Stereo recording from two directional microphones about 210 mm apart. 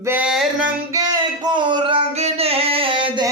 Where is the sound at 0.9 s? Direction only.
20° right (ahead or behind).